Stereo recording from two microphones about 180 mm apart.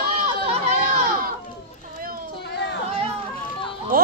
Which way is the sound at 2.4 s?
70° left (ahead or behind).